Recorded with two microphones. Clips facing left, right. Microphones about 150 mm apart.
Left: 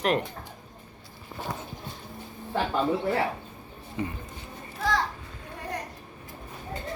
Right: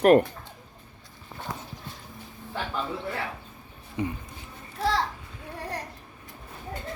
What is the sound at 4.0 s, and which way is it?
Speech, 15° right (ahead or behind).